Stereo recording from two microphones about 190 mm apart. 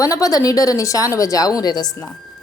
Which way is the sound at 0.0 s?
20° left (ahead or behind).